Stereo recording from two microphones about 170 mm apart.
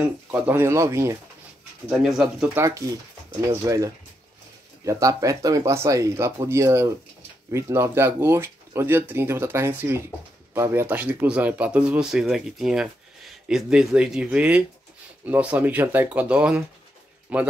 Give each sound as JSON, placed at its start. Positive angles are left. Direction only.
{"t": 0.0, "sound": "speech", "side_deg": -15}
{"t": 1.9, "sound": "speech", "side_deg": 0}